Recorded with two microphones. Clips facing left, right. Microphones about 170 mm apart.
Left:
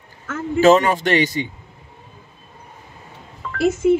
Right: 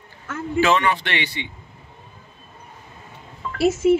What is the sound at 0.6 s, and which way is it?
Speech, 45° left (ahead or behind).